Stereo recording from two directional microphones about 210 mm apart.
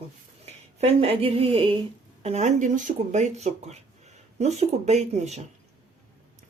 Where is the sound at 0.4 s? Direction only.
30° right (ahead or behind).